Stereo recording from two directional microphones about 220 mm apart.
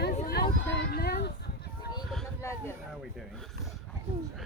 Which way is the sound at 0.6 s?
50° left (ahead or behind).